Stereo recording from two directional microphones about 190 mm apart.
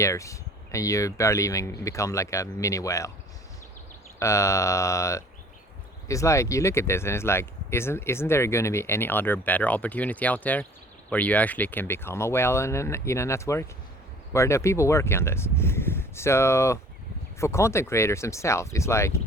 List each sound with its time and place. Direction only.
0.0 s speech: 15° left (ahead or behind)
4.2 s speech: 15° left (ahead or behind)